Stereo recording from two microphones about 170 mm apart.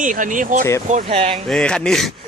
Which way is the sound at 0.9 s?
35° right (ahead or behind).